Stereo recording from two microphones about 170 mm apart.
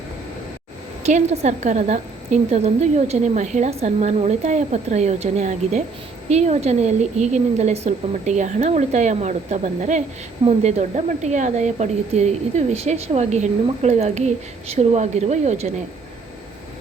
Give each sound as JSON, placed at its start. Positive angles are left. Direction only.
{"t": 1.0, "sound": "speech", "side_deg": -40}